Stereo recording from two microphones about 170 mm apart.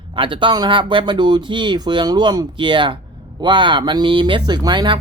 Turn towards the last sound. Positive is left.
turn(degrees=-25)  # may be behind; listen again after turning